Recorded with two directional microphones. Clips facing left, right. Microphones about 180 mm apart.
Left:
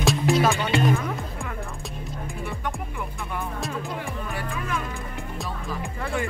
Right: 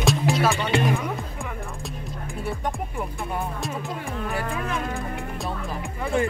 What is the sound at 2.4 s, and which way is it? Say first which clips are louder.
Music: right 4 dB; 35° right (ahead or behind).